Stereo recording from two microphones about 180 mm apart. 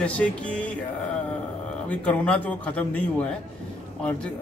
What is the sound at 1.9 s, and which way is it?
A man's voice, 10° left (ahead or behind).